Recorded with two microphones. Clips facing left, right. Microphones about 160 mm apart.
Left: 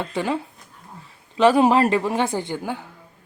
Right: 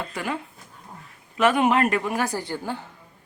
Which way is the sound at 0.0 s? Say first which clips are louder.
Left 5 dB; 30° left (ahead or behind).